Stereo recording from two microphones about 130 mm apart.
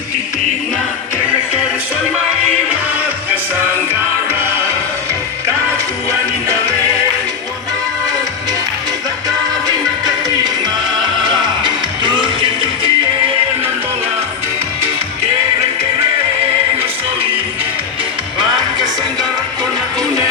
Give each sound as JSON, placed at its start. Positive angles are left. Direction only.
{"t": 5.7, "sound": "music", "side_deg": -25}
{"t": 11.2, "sound": "music", "side_deg": -35}